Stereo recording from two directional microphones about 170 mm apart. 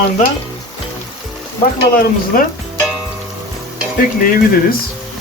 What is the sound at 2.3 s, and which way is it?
Stir, 60° left (ahead or behind).